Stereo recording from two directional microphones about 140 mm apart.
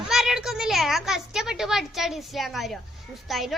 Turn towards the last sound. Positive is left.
turn(degrees=0)  # may be behind; listen again after turning